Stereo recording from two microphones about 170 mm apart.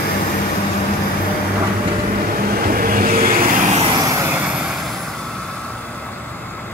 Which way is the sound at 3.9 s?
20° right (ahead or behind).